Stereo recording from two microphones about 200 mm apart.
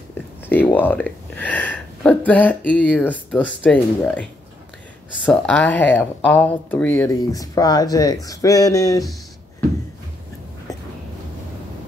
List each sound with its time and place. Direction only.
0.5 s speech: 10° left (ahead or behind)